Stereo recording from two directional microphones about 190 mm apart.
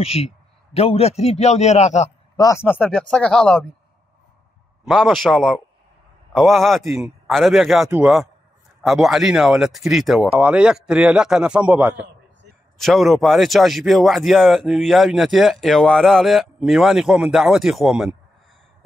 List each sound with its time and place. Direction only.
0.0 s a man's voice: 30° left (ahead or behind)
2.3 s speech: 15° left (ahead or behind)
4.8 s speech: centre (ahead or behind)